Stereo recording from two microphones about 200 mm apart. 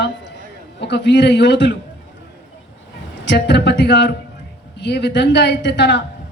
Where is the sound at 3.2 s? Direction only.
60° left (ahead or behind).